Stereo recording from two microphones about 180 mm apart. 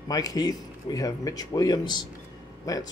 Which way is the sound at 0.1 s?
20° left (ahead or behind).